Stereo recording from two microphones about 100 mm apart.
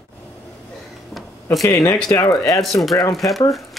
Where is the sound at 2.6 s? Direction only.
Centre (ahead or behind).